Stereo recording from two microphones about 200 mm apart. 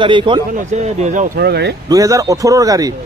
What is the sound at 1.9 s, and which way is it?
Speech, 15° right (ahead or behind).